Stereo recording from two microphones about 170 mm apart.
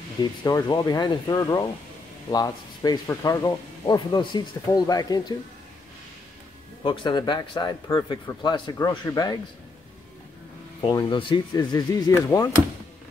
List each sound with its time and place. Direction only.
0.2 s speech: 25° left (ahead or behind)
6.8 s speech: 30° left (ahead or behind)
10.8 s speech: 25° left (ahead or behind)